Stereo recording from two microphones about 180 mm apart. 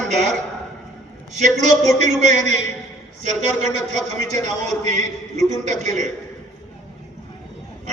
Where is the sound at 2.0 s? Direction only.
40° right (ahead or behind).